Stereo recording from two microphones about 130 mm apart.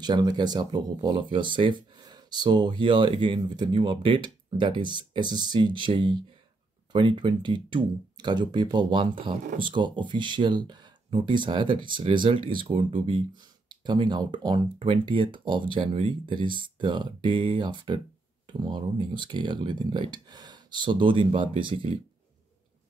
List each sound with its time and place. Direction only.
0.0 s speech: 35° right (ahead or behind)